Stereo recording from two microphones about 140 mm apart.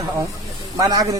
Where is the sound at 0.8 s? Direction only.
25° right (ahead or behind).